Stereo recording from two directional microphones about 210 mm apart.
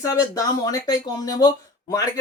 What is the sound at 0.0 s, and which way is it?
Speech, 15° left (ahead or behind).